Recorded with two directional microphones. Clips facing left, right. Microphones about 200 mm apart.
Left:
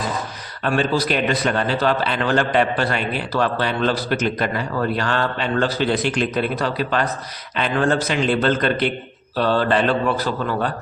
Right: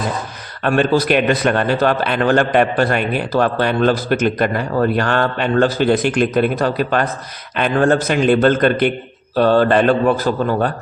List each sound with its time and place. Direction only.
0.6 s a man's voice: 55° right (ahead or behind)